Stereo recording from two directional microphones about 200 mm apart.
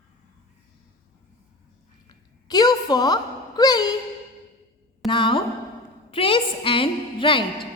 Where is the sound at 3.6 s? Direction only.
20° left (ahead or behind).